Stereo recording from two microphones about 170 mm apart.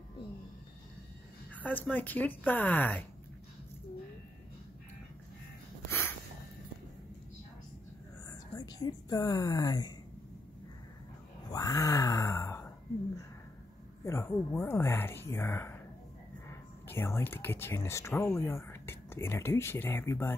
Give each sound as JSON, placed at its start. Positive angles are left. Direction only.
{"t": 1.6, "sound": "speech", "side_deg": 10}
{"t": 8.3, "sound": "speech", "side_deg": 20}
{"t": 11.5, "sound": "a sound", "side_deg": 20}
{"t": 14.0, "sound": "speech", "side_deg": 15}